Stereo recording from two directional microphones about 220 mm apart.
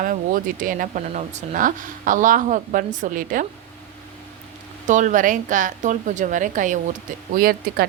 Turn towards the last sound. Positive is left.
turn(degrees=-40)  # may be behind; listen again after turning